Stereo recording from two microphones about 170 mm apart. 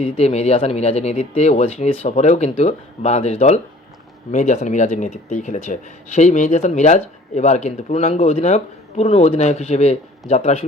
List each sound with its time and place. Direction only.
0.0 s speech: 35° left (ahead or behind)